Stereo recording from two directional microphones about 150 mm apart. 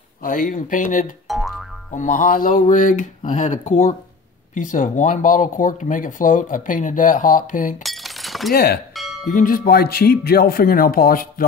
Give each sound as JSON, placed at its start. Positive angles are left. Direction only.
{"t": 0.2, "sound": "speech", "side_deg": 65}
{"t": 1.2, "sound": "music", "side_deg": 0}
{"t": 1.9, "sound": "speech", "side_deg": 55}
{"t": 7.8, "sound": "breaking", "side_deg": 0}
{"t": 9.0, "sound": "music", "side_deg": 0}
{"t": 9.3, "sound": "speech", "side_deg": 65}